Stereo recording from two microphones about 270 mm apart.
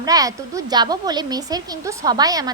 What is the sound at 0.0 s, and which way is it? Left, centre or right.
A woman's voice, centre.